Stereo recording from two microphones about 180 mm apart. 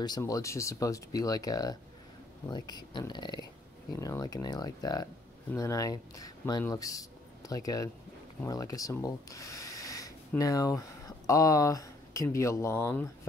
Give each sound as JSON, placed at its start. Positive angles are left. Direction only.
{"t": 0.0, "sound": "speech", "side_deg": 20}